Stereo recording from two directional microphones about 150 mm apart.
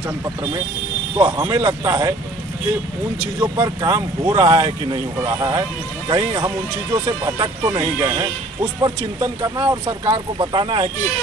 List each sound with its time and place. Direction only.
0.2 s speech: 25° right (ahead or behind)
3.3 s speech: 25° right (ahead or behind)